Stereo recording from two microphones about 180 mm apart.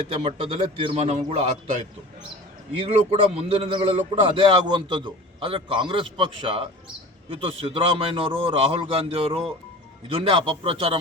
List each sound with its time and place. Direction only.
0.1 s a man's voice: 35° right (ahead or behind)